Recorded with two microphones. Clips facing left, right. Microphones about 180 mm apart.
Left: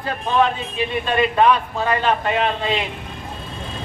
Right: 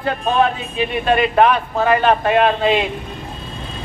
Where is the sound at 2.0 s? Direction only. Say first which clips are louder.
Right 5 dB; 65° right (ahead or behind).